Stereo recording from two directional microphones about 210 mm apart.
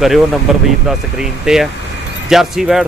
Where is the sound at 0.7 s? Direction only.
Centre (ahead or behind).